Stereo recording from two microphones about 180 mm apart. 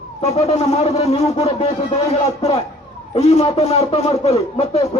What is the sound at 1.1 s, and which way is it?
Speech, 35° left (ahead or behind).